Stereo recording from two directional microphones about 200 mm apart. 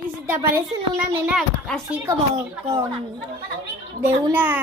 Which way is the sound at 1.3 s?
Centre (ahead or behind).